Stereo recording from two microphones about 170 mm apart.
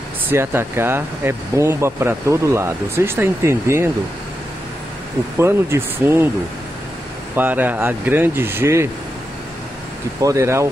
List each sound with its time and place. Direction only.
0.3 s speech: 15° right (ahead or behind)
5.4 s speech: 15° right (ahead or behind)
7.3 s speech: 10° right (ahead or behind)
10.2 s speech: 15° right (ahead or behind)